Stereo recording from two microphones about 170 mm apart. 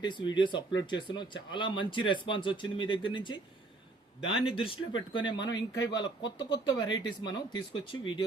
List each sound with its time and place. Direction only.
0.0 s speech: 25° left (ahead or behind)